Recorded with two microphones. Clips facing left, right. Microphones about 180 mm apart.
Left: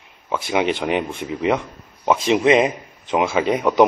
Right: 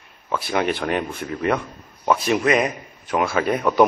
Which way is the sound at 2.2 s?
20° left (ahead or behind).